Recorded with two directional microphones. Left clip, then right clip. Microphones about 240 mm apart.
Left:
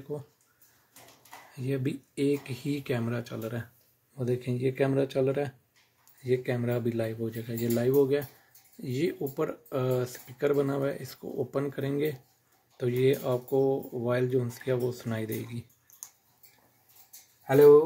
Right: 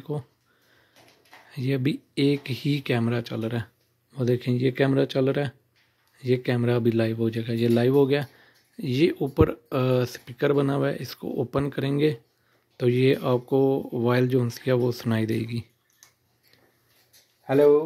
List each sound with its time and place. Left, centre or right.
1.5 s speech: right
17.5 s speech: right